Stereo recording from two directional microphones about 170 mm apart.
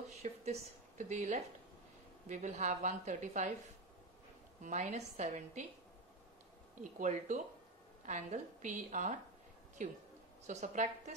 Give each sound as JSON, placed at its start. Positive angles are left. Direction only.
{"t": 0.2, "sound": "a sound", "side_deg": -40}
{"t": 2.2, "sound": "a woman's voice", "side_deg": -50}
{"t": 4.6, "sound": "a woman's voice", "side_deg": -45}
{"t": 6.8, "sound": "a woman's voice", "side_deg": -45}